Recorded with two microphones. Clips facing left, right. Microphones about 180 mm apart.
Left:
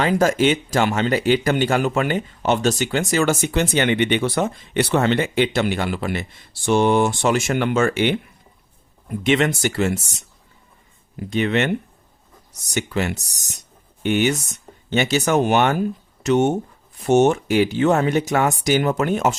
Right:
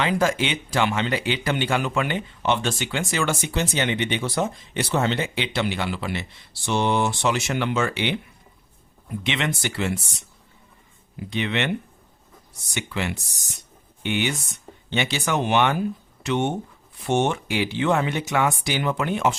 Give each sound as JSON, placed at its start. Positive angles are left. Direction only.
{"t": 0.0, "sound": "speech", "side_deg": 45}
{"t": 3.4, "sound": "speech", "side_deg": 55}
{"t": 9.2, "sound": "speech", "side_deg": 45}
{"t": 11.3, "sound": "speech", "side_deg": 45}